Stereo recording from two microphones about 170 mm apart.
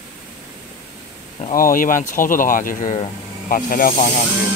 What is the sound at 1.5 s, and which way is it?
Speech, 55° left (ahead or behind).